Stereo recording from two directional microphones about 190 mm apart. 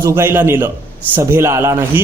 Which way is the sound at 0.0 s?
10° right (ahead or behind).